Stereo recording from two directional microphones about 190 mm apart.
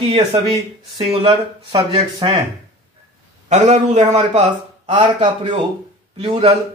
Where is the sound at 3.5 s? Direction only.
40° right (ahead or behind).